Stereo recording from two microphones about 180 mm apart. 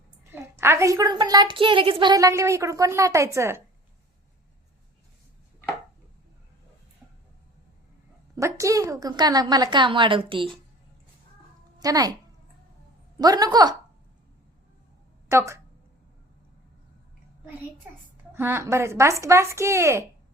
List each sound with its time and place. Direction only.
0.3 s a woman's voice: 15° right (ahead or behind)
8.4 s a woman's voice: 15° right (ahead or behind)
11.8 s a woman's voice: 20° right (ahead or behind)
13.1 s a woman's voice: 20° right (ahead or behind)
15.3 s speech: 15° right (ahead or behind)
18.3 s a woman's voice: 15° right (ahead or behind)